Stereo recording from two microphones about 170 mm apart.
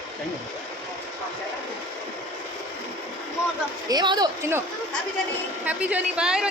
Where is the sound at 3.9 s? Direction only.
25° right (ahead or behind).